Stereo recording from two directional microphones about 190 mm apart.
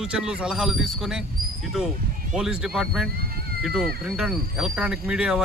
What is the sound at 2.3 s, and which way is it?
Speech, 5° right (ahead or behind).